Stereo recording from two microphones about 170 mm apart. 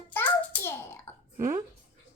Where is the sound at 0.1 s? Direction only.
10° left (ahead or behind).